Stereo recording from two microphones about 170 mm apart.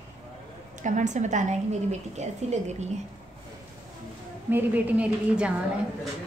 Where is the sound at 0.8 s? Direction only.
45° right (ahead or behind).